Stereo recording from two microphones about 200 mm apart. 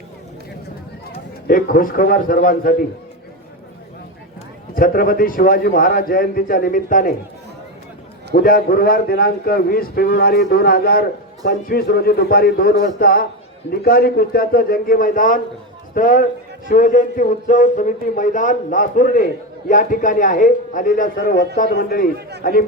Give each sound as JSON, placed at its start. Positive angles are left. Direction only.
{"t": 1.5, "sound": "a man's voice", "side_deg": 45}
{"t": 4.7, "sound": "a man's voice", "side_deg": 45}
{"t": 8.3, "sound": "a man's voice", "side_deg": 45}